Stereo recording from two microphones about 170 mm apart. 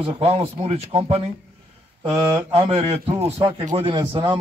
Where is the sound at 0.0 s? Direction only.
35° right (ahead or behind).